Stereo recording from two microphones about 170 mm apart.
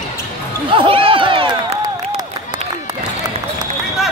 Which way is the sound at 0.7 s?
30° right (ahead or behind).